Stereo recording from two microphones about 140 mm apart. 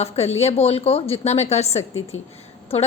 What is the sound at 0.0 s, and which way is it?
A woman's voice, 50° left (ahead or behind).